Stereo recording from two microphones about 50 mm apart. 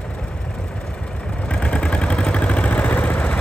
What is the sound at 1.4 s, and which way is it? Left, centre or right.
Vehicle, left.